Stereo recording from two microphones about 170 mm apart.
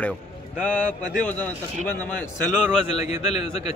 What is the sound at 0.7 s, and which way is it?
Speech, 10° left (ahead or behind).